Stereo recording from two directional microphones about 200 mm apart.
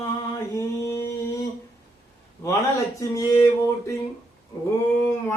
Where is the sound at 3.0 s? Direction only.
15° left (ahead or behind).